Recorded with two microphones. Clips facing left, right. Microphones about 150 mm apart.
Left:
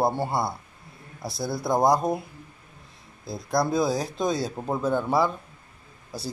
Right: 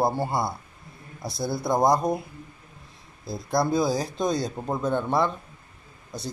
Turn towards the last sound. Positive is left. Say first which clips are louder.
# even
turn(degrees=5)  # may be behind; listen again after turning